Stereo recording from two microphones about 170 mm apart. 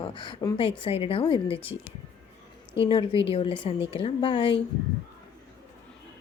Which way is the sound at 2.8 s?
35° left (ahead or behind).